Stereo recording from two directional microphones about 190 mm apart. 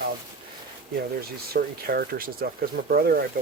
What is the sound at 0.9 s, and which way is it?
Speech, 55° right (ahead or behind).